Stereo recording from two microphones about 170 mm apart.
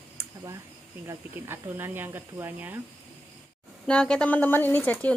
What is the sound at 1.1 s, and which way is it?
Speech, 15° right (ahead or behind).